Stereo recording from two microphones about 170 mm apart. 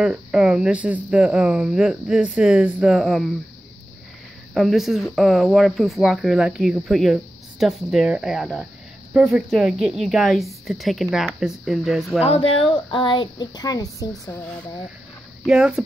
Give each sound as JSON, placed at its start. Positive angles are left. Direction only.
{"t": 0.0, "sound": "speech", "side_deg": -5}
{"t": 4.6, "sound": "speech", "side_deg": 0}
{"t": 12.2, "sound": "speech", "side_deg": 35}
{"t": 15.4, "sound": "speech", "side_deg": -5}